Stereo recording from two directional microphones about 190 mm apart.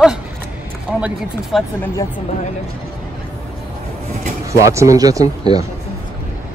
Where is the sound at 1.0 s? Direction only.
Centre (ahead or behind).